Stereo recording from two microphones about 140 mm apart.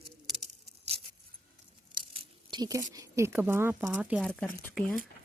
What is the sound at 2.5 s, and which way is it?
A woman's voice, 30° right (ahead or behind).